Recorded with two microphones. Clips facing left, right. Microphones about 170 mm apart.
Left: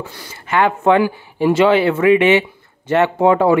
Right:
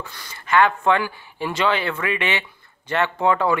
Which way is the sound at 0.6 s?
20° left (ahead or behind).